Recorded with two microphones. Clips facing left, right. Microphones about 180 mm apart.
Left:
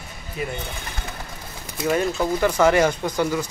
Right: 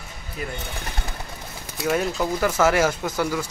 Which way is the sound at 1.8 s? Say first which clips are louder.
Left 2 dB; 5° right (ahead or behind).